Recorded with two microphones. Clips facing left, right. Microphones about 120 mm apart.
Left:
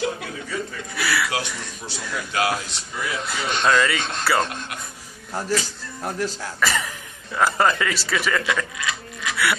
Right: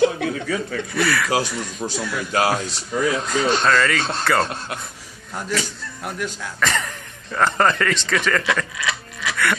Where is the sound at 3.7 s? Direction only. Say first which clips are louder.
Right 1 dB; 10° left (ahead or behind).